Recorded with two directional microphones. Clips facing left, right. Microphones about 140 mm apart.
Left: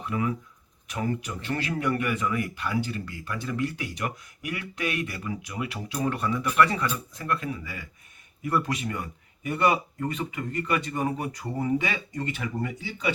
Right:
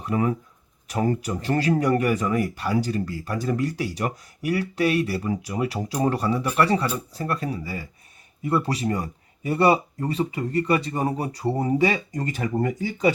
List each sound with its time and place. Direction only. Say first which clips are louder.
0.0 s speech: right 5 dB; 40° right (ahead or behind)